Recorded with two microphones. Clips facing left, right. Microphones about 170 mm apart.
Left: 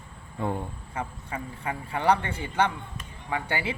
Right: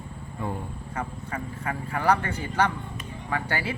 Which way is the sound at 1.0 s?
10° left (ahead or behind).